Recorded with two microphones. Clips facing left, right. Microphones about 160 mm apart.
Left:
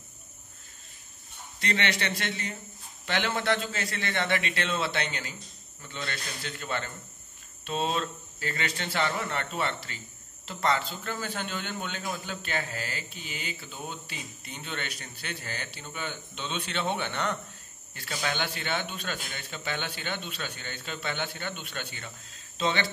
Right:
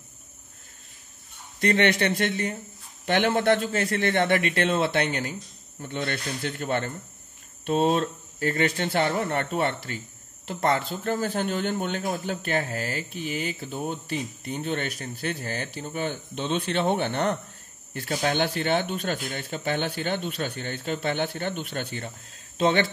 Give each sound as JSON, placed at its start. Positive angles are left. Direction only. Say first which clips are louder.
{"t": 1.6, "sound": "a man's voice", "louder": "right 8 dB", "side_deg": -50}